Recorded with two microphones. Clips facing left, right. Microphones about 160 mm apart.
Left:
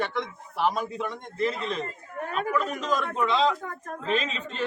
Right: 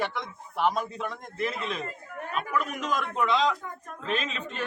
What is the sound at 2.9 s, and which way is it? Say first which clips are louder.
Speech: right 1 dB; centre (ahead or behind).